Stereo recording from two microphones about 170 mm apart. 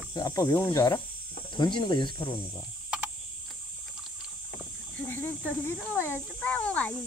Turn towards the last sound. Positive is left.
turn(degrees=10)  # may be behind; listen again after turning